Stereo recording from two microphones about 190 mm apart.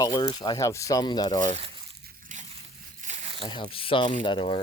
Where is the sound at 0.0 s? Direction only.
20° left (ahead or behind).